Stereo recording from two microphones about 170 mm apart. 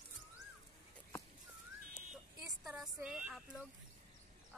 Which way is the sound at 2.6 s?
Centre (ahead or behind).